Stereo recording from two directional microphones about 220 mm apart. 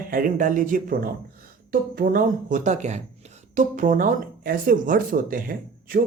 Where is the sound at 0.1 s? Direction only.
35° right (ahead or behind).